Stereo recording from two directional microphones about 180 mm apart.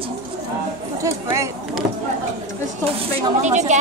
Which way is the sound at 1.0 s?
15° right (ahead or behind).